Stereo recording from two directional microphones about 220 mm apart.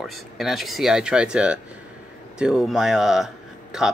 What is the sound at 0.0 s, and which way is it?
Speech, centre (ahead or behind).